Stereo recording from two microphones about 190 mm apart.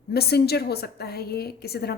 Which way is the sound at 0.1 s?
55° left (ahead or behind).